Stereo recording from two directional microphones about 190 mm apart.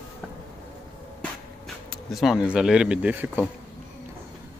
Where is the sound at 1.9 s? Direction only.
Centre (ahead or behind).